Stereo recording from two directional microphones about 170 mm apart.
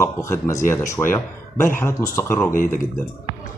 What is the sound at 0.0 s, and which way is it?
Speech, 15° left (ahead or behind).